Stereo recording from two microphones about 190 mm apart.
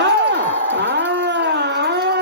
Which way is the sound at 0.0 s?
65° right (ahead or behind).